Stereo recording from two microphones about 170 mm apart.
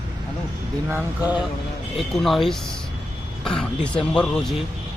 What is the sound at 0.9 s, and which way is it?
Speech, 5° right (ahead or behind).